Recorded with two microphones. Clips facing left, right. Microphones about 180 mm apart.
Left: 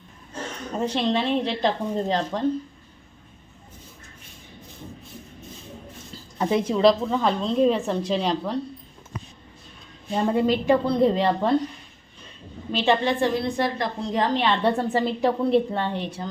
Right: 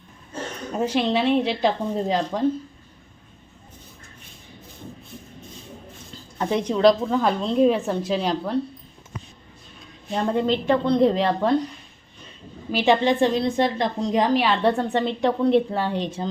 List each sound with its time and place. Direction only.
0.8 s a woman's voice: 5° right (ahead or behind)
6.4 s a woman's voice: 5° left (ahead or behind)
10.1 s a woman's voice: 5° left (ahead or behind)
12.7 s a woman's voice: 15° right (ahead or behind)
14.4 s a woman's voice: centre (ahead or behind)
16.0 s speech: 20° right (ahead or behind)